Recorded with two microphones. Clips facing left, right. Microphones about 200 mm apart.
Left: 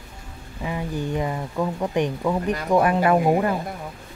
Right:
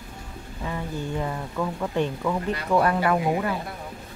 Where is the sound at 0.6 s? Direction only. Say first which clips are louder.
Left 4 dB; 15° left (ahead or behind).